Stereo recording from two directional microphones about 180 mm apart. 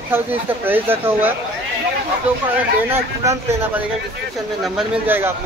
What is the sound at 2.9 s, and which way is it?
Speech, 15° right (ahead or behind).